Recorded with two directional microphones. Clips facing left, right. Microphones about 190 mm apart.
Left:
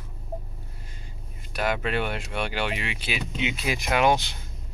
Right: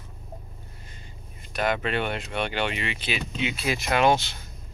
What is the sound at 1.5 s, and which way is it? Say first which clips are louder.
Speech: right 1 dB; 5° left (ahead or behind).